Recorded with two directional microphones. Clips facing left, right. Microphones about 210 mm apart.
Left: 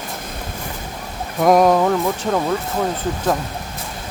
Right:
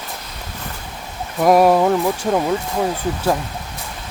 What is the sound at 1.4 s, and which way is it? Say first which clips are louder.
Speech: right 1 dB; 5° right (ahead or behind).